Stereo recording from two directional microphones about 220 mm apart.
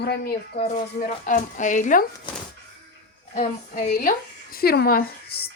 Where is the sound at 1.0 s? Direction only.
35° left (ahead or behind).